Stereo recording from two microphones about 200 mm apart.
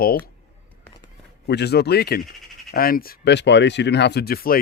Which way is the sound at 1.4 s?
55° left (ahead or behind).